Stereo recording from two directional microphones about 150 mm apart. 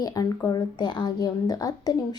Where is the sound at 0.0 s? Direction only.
25° left (ahead or behind).